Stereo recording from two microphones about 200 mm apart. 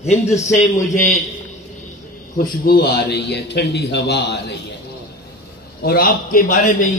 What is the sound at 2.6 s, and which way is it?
A man's voice, 50° left (ahead or behind).